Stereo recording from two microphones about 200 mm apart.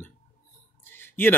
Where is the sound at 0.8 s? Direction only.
10° left (ahead or behind).